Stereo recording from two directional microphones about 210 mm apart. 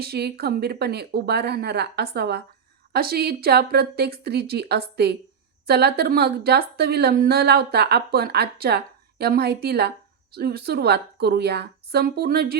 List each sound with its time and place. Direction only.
0.0 s a woman's voice: 50° right (ahead or behind)